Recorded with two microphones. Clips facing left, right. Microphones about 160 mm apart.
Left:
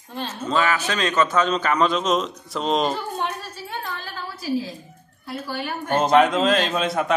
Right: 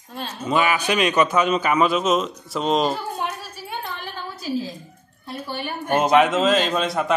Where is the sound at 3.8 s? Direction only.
20° right (ahead or behind).